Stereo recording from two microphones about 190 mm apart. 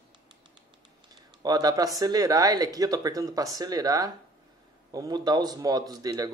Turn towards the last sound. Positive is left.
turn(degrees=-20)  # may be behind; listen again after turning